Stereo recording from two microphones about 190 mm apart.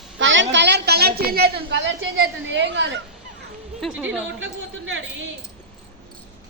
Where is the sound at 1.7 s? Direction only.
75° right (ahead or behind).